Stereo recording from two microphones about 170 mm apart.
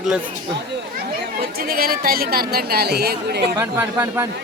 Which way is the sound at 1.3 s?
60° right (ahead or behind).